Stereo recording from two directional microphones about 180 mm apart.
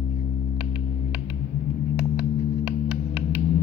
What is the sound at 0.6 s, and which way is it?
Hum, 5° right (ahead or behind).